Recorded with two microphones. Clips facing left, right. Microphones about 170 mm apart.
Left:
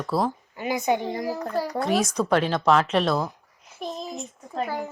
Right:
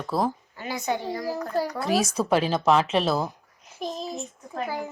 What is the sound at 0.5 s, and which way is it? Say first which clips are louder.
Speech: left 4 dB; 15° left (ahead or behind).